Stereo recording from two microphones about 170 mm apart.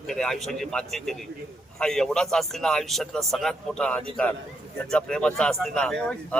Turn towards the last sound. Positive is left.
turn(degrees=5)  # may be behind; listen again after turning